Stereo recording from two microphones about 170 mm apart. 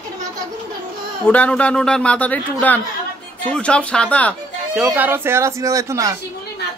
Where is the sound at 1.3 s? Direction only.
10° left (ahead or behind).